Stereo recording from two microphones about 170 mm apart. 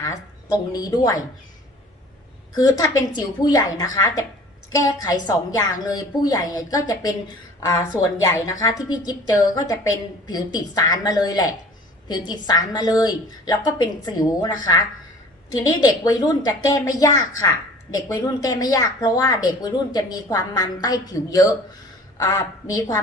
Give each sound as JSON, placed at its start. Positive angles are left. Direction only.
{"t": 0.0, "sound": "a woman's voice", "side_deg": 20}
{"t": 2.6, "sound": "a woman's voice", "side_deg": 20}